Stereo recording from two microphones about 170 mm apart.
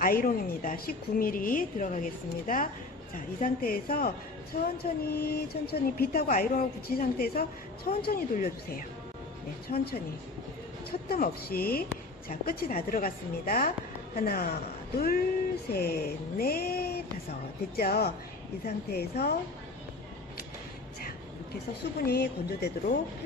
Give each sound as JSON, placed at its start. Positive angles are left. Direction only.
{"t": 0.0, "sound": "a woman's voice", "side_deg": 55}
{"t": 5.1, "sound": "a woman's voice", "side_deg": 65}
{"t": 6.2, "sound": "a woman's voice", "side_deg": 55}
{"t": 22.0, "sound": "speech", "side_deg": 65}